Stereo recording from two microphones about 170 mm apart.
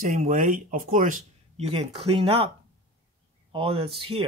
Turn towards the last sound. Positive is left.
turn(degrees=-35)  # may be behind; listen again after turning